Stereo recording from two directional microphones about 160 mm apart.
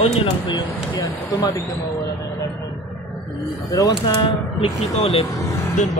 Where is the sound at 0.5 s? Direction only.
25° left (ahead or behind).